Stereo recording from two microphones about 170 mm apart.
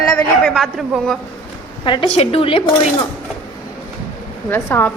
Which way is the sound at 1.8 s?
30° left (ahead or behind).